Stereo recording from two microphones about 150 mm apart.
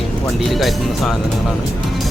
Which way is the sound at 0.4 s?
Centre (ahead or behind).